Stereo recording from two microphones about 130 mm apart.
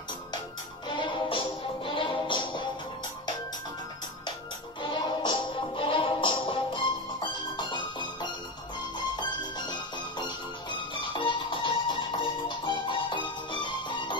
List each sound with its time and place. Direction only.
0.8 s music: 40° left (ahead or behind)
4.8 s music: 35° left (ahead or behind)